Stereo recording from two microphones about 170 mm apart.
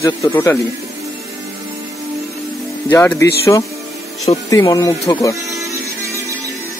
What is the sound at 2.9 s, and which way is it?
Speech, 15° left (ahead or behind).